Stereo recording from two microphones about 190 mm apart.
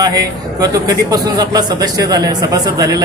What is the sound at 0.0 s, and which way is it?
A man's voice, 20° right (ahead or behind).